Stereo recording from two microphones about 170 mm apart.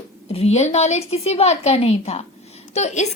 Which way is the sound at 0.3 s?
35° left (ahead or behind).